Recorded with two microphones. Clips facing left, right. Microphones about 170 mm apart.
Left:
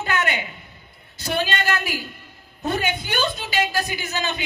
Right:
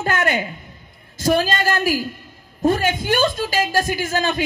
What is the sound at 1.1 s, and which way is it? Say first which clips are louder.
A woman's voice: right 6 dB; 45° right (ahead or behind).